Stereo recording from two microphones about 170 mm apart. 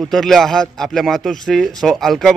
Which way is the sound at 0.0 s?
Centre (ahead or behind).